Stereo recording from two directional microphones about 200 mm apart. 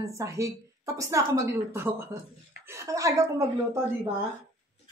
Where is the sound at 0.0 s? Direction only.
15° right (ahead or behind).